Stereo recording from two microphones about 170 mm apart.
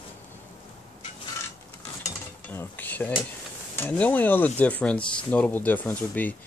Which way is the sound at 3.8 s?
10° left (ahead or behind).